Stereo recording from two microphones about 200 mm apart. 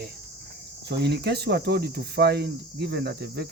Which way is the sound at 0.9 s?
55° right (ahead or behind).